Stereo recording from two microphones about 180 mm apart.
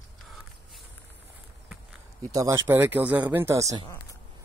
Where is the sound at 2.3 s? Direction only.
15° right (ahead or behind).